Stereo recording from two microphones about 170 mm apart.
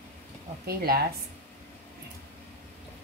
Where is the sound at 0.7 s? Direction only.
65° right (ahead or behind).